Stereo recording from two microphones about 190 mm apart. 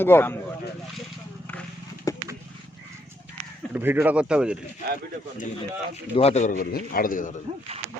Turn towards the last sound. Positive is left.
turn(degrees=45)  # may be behind; listen again after turning